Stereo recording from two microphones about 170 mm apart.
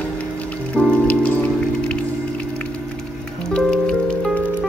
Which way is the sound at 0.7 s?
5° left (ahead or behind).